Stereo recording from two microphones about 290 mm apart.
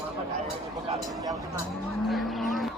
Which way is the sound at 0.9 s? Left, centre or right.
Centre.